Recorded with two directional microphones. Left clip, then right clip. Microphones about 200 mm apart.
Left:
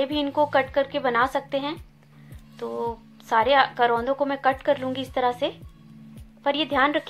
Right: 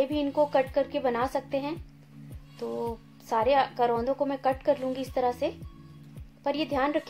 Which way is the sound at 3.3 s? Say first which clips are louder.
Left 5 dB; 5° left (ahead or behind).